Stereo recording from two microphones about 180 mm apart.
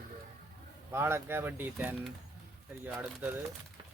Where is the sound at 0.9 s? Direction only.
15° right (ahead or behind).